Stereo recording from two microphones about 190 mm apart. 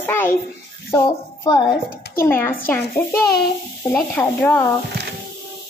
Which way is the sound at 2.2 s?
10° left (ahead or behind).